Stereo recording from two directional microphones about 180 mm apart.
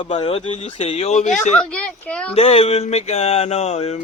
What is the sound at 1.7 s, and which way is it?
Speech, 5° left (ahead or behind).